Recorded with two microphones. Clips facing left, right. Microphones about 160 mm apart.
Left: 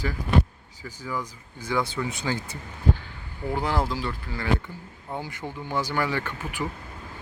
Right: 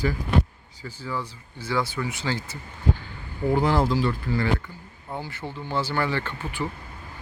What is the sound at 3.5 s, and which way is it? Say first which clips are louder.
Speech: right 4 dB; 10° left (ahead or behind).